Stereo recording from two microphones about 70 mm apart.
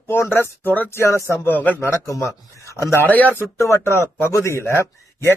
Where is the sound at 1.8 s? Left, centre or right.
Left.